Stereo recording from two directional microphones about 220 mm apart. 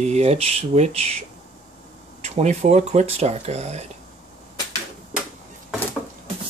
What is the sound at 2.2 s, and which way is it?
Speech, 30° right (ahead or behind).